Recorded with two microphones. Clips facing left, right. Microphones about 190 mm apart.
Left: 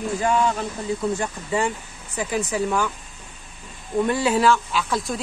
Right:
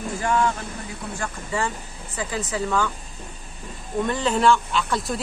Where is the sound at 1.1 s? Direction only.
20° left (ahead or behind).